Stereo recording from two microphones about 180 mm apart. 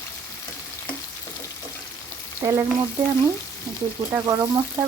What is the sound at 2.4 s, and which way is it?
Speech, 15° right (ahead or behind).